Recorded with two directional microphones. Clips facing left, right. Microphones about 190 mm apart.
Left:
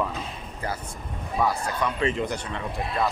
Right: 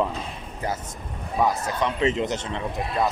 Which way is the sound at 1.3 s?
20° right (ahead or behind).